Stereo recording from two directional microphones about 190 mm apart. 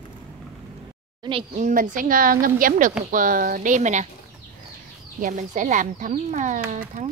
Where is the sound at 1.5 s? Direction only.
40° right (ahead or behind).